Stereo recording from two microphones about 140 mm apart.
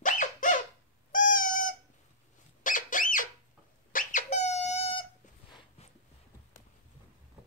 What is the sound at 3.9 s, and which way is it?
Squeak, 70° left (ahead or behind).